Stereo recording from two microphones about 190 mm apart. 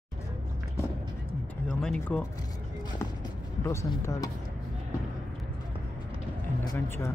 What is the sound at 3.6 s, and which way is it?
Speech, 15° left (ahead or behind).